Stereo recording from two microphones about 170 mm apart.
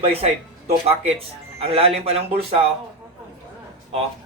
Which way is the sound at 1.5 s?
35° right (ahead or behind).